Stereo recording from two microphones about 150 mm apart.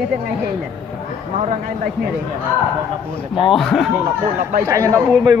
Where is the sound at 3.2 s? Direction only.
35° left (ahead or behind).